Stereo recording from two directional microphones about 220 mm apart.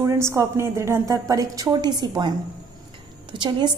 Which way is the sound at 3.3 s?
20° right (ahead or behind).